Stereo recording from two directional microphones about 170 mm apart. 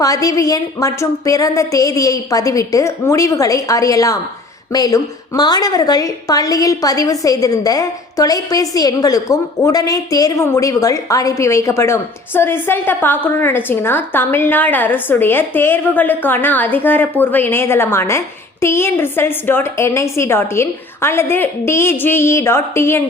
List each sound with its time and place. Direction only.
0.0 s a woman's voice: 20° left (ahead or behind)